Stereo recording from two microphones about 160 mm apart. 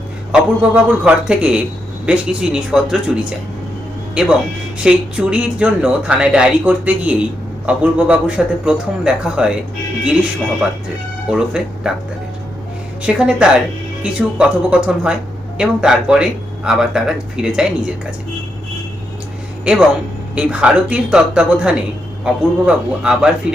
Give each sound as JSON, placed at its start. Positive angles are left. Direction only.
{"t": 0.3, "sound": "speech", "side_deg": -5}
{"t": 11.3, "sound": "speech", "side_deg": -5}
{"t": 13.0, "sound": "speech", "side_deg": -5}
{"t": 19.7, "sound": "speech", "side_deg": -5}